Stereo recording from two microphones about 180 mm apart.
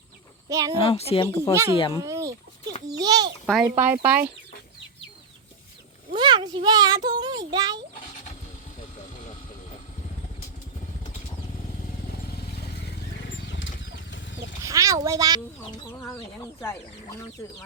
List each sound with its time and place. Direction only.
0.4 s speech: 20° right (ahead or behind)
0.8 s a woman's voice: 35° left (ahead or behind)
1.3 s speech: 15° left (ahead or behind)
1.7 s a child's voice: 30° left (ahead or behind)
2.0 s a sound: 15° right (ahead or behind)
3.0 s a child's voice: 20° right (ahead or behind)
3.4 s speech: centre (ahead or behind)
6.1 s a child's voice: 25° right (ahead or behind)
14.1 s chicken: 90° left
14.6 s a child's voice: 20° right (ahead or behind)
16.6 s speech: 15° left (ahead or behind)